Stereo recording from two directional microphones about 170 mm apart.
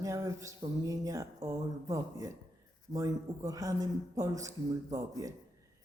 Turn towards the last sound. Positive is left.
turn(degrees=-20)  # may be behind; listen again after turning